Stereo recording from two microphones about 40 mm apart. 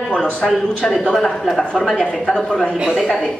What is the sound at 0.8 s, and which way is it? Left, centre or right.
Speech, centre.